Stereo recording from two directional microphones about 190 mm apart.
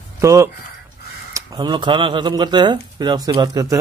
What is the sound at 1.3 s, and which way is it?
Speech, 20° right (ahead or behind).